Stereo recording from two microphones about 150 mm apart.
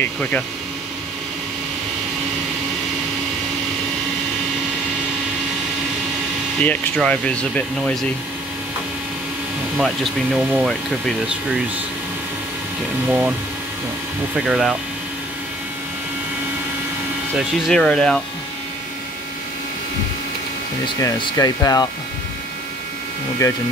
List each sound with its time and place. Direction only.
0.0 s speech: 10° left (ahead or behind)
6.6 s speech: 10° left (ahead or behind)
9.8 s speech: centre (ahead or behind)
14.3 s speech: 5° right (ahead or behind)
17.4 s speech: centre (ahead or behind)
20.8 s speech: 30° left (ahead or behind)
23.4 s speech: 25° left (ahead or behind)